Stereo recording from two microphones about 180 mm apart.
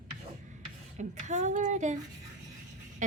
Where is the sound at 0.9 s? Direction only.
40° right (ahead or behind).